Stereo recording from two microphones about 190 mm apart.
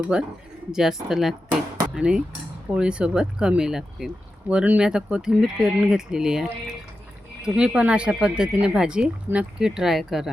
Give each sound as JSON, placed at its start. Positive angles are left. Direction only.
{"t": 0.0, "sound": "speech", "side_deg": -5}